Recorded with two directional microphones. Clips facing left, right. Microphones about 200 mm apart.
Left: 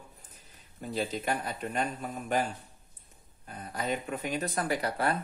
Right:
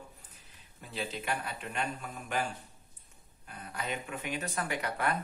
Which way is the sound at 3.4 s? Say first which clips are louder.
Left 5 dB; 40° left (ahead or behind).